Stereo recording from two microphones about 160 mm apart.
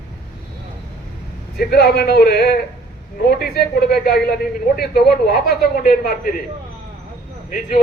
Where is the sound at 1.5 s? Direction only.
80° left; by 6.1 s 65° left (ahead or behind).